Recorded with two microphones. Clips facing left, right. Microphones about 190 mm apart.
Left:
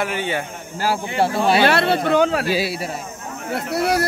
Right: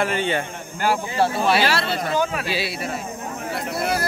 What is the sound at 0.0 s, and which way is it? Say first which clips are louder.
Speech: right 1 dB; 10° left (ahead or behind).